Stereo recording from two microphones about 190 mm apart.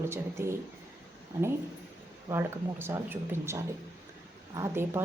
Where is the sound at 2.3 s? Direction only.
15° right (ahead or behind).